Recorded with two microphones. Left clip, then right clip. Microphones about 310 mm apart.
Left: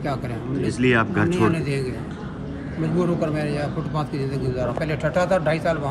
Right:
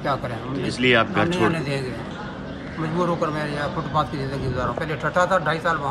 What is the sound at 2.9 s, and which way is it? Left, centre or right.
Speech, centre.